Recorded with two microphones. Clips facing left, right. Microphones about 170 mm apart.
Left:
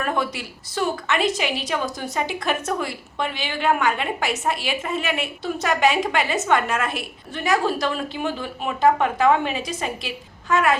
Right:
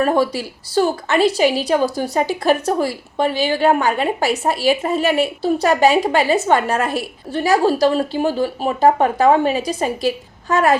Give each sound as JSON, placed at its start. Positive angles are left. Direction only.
{"t": 0.0, "sound": "a woman's voice", "side_deg": -35}